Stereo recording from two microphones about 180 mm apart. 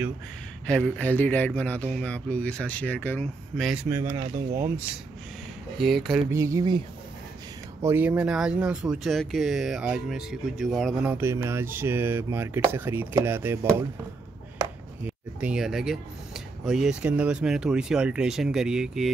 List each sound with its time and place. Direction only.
0.7 s speech: 5° left (ahead or behind)
3.9 s speech: 20° right (ahead or behind)
5.8 s speech: centre (ahead or behind)
6.3 s speech: 15° right (ahead or behind)
7.8 s speech: 10° right (ahead or behind)
11.1 s speech: 15° right (ahead or behind)
15.0 s speech: 5° right (ahead or behind)